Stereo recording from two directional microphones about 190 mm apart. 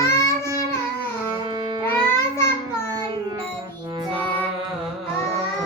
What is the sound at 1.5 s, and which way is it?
Music, 25° right (ahead or behind).